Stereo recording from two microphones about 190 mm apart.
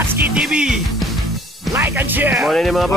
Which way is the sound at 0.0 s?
10° right (ahead or behind).